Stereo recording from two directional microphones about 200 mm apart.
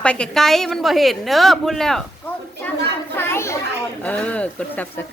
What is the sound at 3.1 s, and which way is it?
A child's voice, 10° left (ahead or behind).